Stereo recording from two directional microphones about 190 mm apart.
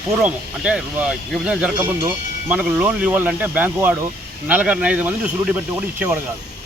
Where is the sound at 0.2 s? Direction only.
5° right (ahead or behind).